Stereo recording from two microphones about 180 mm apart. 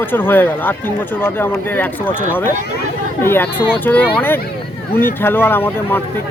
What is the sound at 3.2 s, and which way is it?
A man's voice, 10° left (ahead or behind).